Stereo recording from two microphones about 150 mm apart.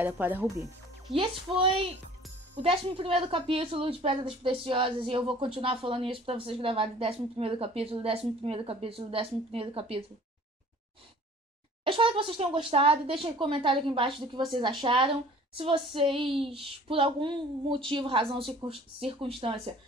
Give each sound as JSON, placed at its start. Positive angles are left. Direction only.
{"t": 0.0, "sound": "speech", "side_deg": -10}
{"t": 1.1, "sound": "speech", "side_deg": 0}
{"t": 2.5, "sound": "a woman's voice", "side_deg": -40}
{"t": 11.8, "sound": "a woman's voice", "side_deg": -35}